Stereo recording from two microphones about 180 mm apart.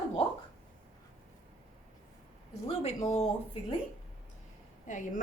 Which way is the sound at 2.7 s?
35° left (ahead or behind).